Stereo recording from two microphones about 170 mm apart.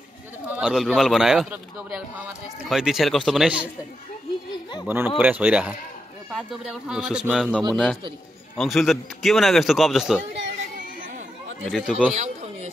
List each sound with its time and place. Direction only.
0.5 s a man's voice: 5° right (ahead or behind)
4.8 s a man's voice: 10° right (ahead or behind)
7.7 s a man's voice: 5° left (ahead or behind)
11.6 s a man's voice: centre (ahead or behind)
12.1 s a sound: 45° right (ahead or behind)